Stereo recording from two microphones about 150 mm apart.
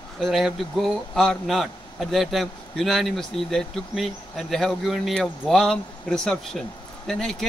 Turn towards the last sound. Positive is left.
turn(degrees=0)  # may be behind; listen again after turning